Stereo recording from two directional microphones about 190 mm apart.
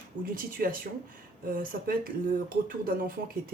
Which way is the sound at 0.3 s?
50° right (ahead or behind).